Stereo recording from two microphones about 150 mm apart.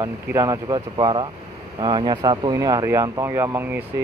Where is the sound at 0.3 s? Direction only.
25° right (ahead or behind).